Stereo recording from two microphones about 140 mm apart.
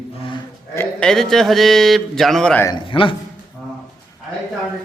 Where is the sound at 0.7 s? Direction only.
15° left (ahead or behind).